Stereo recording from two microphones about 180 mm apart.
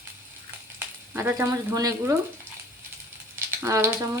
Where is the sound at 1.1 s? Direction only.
15° right (ahead or behind).